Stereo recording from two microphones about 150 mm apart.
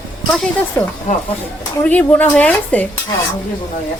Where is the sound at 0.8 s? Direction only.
20° left (ahead or behind).